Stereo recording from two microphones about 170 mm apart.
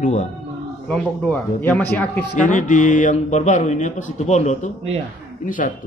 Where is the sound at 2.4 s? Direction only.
50° left (ahead or behind).